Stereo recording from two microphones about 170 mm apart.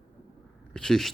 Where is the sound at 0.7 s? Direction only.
5° left (ahead or behind).